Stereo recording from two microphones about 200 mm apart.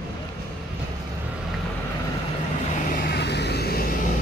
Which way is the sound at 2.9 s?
50° left (ahead or behind).